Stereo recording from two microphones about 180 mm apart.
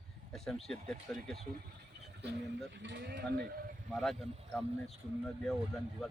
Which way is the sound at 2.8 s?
75° right (ahead or behind).